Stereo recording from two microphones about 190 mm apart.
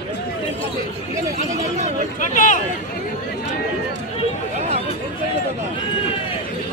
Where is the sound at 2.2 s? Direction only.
45° left (ahead or behind).